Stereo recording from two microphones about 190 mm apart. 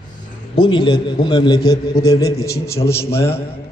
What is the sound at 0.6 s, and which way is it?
A man's voice, 25° left (ahead or behind).